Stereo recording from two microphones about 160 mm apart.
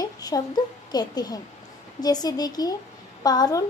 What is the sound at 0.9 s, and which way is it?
A woman's voice, 25° left (ahead or behind).